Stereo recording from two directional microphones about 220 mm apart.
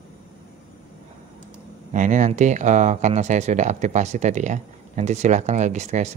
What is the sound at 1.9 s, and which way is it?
Speech, 35° right (ahead or behind).